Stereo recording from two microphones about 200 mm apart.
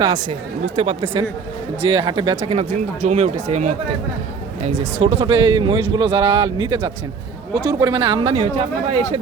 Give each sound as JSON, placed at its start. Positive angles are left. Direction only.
{"t": 0.0, "sound": "speech", "side_deg": -20}
{"t": 0.8, "sound": "speech", "side_deg": -30}
{"t": 2.5, "sound": "speech", "side_deg": -35}
{"t": 4.9, "sound": "speech", "side_deg": -25}